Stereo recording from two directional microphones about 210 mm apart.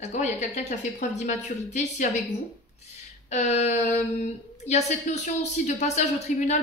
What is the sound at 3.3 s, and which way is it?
Speech, 30° left (ahead or behind).